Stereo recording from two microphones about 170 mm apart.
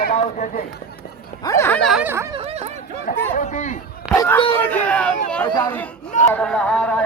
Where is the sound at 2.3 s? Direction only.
35° right (ahead or behind).